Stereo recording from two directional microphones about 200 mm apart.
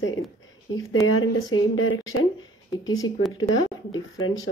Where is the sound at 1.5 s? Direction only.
90° left.